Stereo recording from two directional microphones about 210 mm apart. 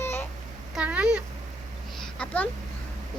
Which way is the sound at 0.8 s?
5° right (ahead or behind).